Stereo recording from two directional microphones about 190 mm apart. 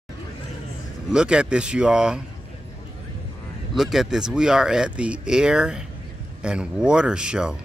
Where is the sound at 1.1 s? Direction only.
5° right (ahead or behind).